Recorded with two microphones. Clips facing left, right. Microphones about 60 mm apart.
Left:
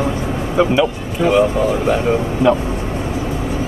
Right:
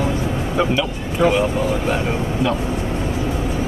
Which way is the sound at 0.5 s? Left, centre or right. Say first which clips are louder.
Left 6 dB; centre.